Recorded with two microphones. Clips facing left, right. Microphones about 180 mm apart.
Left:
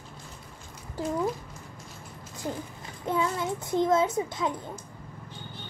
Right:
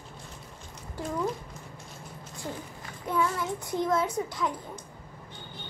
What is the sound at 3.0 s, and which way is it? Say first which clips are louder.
A child's voice: left 1 dB; 25° left (ahead or behind).